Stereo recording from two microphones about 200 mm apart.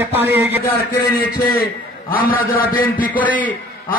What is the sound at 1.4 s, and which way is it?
A man's voice, 45° left (ahead or behind).